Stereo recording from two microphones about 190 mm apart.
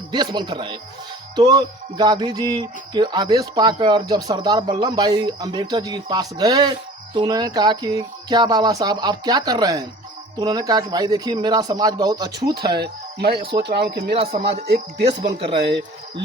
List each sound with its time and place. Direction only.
0.1 s speech: 25° right (ahead or behind)
12.5 s speech: 55° right (ahead or behind)
14.2 s speech: 30° right (ahead or behind)
15.6 s speech: 65° right (ahead or behind)